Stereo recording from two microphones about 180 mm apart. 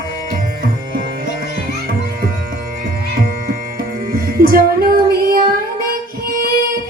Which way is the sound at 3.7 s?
55° right (ahead or behind).